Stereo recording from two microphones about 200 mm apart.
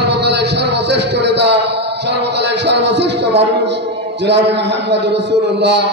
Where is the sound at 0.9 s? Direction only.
60° right (ahead or behind).